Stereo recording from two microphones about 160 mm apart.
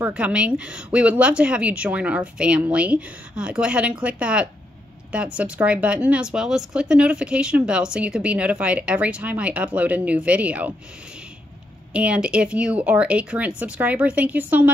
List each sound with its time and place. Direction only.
0.0 s speech: 10° right (ahead or behind)
11.9 s speech: 5° right (ahead or behind)